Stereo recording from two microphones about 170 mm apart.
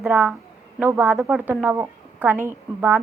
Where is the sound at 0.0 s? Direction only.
10° right (ahead or behind).